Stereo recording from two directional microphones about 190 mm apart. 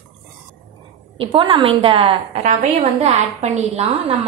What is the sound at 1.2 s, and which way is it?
A woman's voice, 30° right (ahead or behind).